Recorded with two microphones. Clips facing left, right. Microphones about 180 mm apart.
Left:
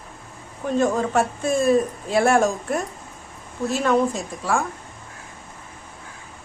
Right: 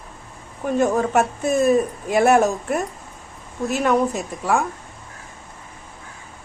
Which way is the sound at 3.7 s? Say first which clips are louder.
Right 1 dB; 15° right (ahead or behind).